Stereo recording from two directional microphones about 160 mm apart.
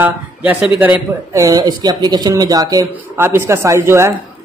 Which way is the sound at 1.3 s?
20° right (ahead or behind).